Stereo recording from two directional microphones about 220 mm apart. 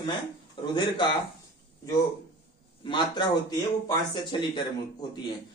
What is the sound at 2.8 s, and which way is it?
A man's voice, 20° left (ahead or behind).